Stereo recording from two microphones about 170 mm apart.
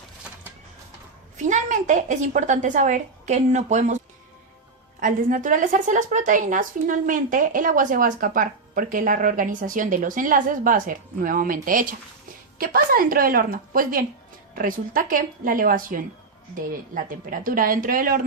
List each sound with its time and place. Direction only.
1.5 s speech: 45° right (ahead or behind)